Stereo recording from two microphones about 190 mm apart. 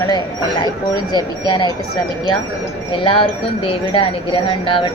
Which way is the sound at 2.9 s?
30° left (ahead or behind).